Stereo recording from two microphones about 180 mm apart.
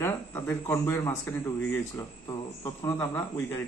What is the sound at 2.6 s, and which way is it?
Speech, 15° left (ahead or behind).